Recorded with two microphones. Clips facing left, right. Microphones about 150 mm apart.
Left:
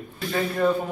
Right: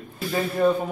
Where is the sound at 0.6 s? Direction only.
10° right (ahead or behind).